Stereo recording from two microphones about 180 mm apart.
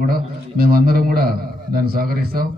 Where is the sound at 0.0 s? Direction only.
55° right (ahead or behind).